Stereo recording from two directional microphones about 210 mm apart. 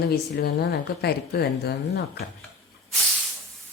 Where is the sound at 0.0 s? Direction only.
50° left (ahead or behind).